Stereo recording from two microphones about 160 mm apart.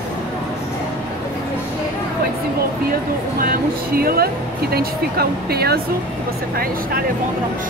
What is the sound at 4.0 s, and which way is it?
Speech, 70° right (ahead or behind).